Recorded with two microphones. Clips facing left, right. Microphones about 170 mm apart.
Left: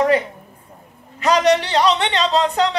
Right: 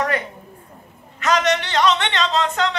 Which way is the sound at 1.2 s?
35° left (ahead or behind).